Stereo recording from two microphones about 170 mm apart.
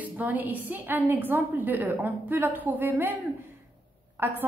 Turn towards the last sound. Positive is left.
turn(degrees=-10)  # may be behind; listen again after turning